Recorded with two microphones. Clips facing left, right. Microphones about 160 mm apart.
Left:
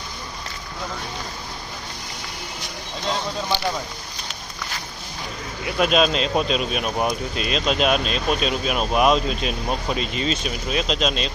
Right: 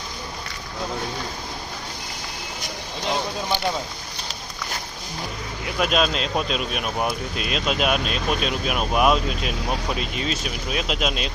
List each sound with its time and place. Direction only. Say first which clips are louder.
5.8 s speech: left 3 dB; centre (ahead or behind)